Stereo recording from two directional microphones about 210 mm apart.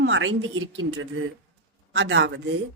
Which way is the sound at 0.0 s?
65° right (ahead or behind).